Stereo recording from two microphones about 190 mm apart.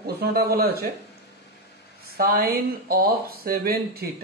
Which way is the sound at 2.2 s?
55° right (ahead or behind).